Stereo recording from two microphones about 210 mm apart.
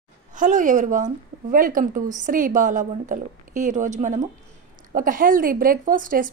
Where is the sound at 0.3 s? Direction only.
40° right (ahead or behind).